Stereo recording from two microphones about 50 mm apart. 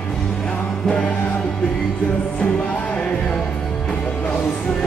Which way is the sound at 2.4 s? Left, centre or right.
Left.